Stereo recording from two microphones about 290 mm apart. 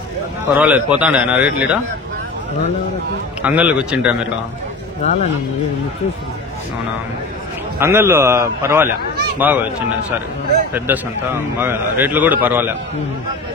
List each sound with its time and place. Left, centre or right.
0.6 s speech: centre
3.4 s speech: centre
5.0 s a man's voice: left
7.8 s a man's voice: centre